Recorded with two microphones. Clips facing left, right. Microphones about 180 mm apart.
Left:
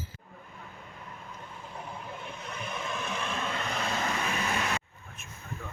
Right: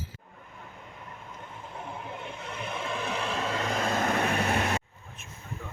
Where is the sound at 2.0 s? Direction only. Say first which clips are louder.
Right 2 dB; 25° right (ahead or behind); by 4.7 s 60° right (ahead or behind).